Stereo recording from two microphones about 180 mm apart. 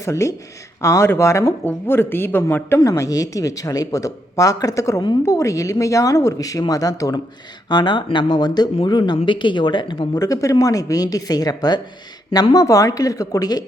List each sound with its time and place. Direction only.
0.0 s speech: 15° left (ahead or behind)